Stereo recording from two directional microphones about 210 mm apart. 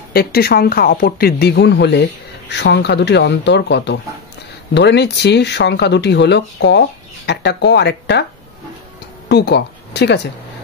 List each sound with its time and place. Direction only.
0.1 s speech: 45° left (ahead or behind)
9.3 s speech: 55° left (ahead or behind)